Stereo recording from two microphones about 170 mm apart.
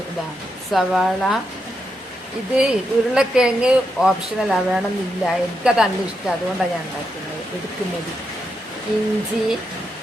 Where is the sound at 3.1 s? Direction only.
5° right (ahead or behind).